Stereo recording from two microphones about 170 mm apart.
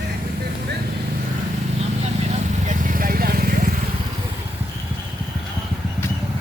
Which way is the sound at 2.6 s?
55° right (ahead or behind).